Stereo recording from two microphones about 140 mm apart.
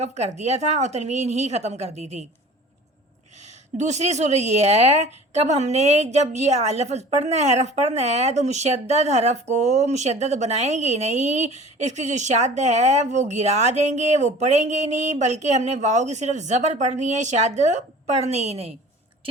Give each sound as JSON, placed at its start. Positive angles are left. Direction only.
{"t": 0.0, "sound": "speech", "side_deg": -55}
{"t": 3.8, "sound": "a woman's voice", "side_deg": -55}